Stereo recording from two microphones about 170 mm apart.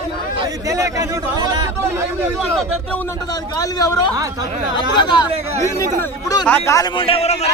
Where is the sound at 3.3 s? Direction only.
20° left (ahead or behind).